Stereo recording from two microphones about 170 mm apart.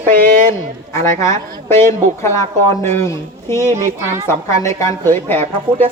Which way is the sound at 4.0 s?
15° right (ahead or behind).